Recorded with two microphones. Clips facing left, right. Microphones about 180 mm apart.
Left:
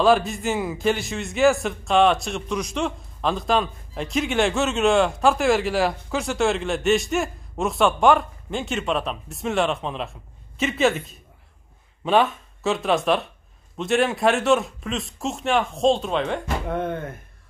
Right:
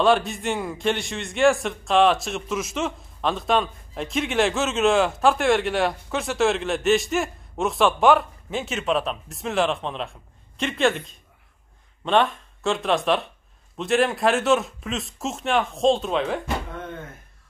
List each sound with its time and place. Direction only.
0.0 s a man's voice: centre (ahead or behind)
16.6 s speech: 65° left (ahead or behind)